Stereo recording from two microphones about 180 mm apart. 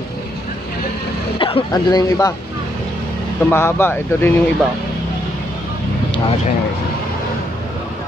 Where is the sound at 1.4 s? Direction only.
25° left (ahead or behind).